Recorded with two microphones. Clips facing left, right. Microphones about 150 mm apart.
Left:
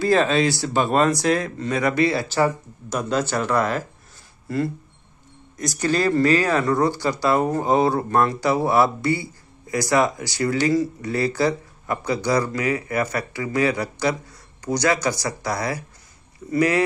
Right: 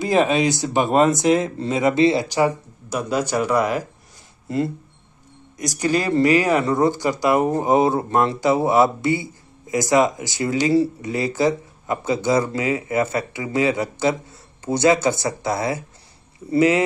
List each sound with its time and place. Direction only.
0.0 s speech: 20° right (ahead or behind)
5.6 s speech: 15° right (ahead or behind)
10.7 s speech: 30° right (ahead or behind)
11.1 s speech: 20° right (ahead or behind)